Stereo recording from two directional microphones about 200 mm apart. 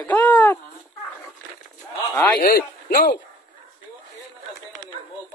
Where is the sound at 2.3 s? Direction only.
50° left (ahead or behind).